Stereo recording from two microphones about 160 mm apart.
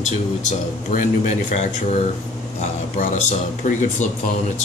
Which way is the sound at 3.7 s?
50° left (ahead or behind).